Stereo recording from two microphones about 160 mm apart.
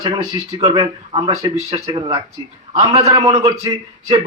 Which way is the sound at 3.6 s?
20° right (ahead or behind).